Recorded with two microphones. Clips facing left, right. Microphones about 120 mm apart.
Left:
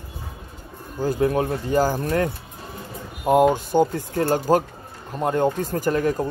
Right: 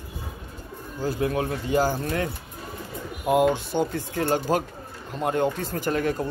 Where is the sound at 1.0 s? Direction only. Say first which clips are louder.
Left 5 dB; 40° left (ahead or behind).